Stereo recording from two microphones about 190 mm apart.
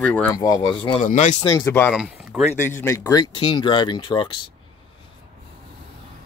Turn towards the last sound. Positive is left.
turn(degrees=25)  # may be behind; listen again after turning